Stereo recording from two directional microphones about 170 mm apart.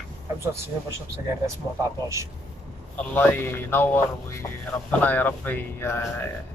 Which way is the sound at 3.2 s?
10° left (ahead or behind).